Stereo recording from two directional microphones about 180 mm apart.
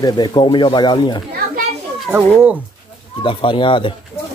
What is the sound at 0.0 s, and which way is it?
Speech, 25° left (ahead or behind).